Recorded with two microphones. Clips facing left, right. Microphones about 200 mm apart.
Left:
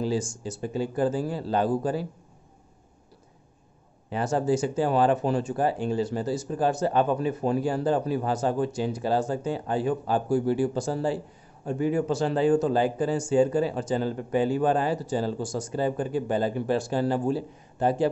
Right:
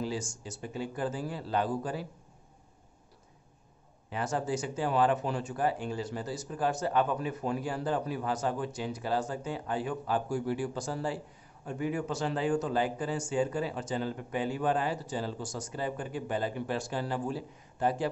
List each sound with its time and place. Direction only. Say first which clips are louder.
0.0 s speech: left 7 dB; 30° left (ahead or behind)
4.1 s speech: left 7 dB; 30° left (ahead or behind)